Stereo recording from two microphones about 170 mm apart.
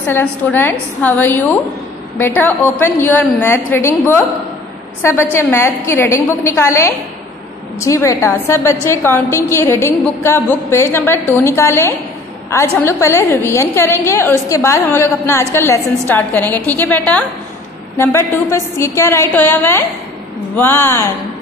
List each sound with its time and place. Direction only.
0.0 s a woman's voice: 10° left (ahead or behind)